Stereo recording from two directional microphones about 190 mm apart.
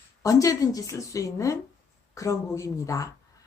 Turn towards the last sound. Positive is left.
turn(degrees=15)  # may be behind; listen again after turning